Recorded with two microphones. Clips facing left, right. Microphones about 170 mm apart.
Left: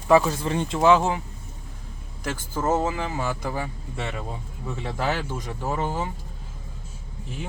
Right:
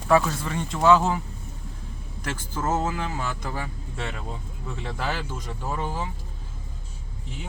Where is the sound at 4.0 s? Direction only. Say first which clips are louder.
Left 2 dB; 10° left (ahead or behind).